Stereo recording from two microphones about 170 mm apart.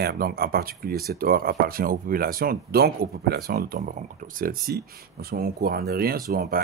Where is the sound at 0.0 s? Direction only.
65° right (ahead or behind).